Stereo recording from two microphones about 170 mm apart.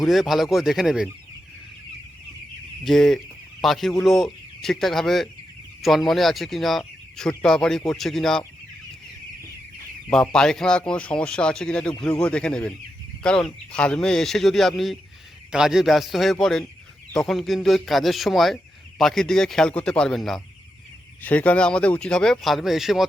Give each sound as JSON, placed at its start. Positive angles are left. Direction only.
{"t": 0.0, "sound": "speech", "side_deg": 0}
{"t": 2.8, "sound": "speech", "side_deg": 0}
{"t": 10.1, "sound": "speech", "side_deg": 5}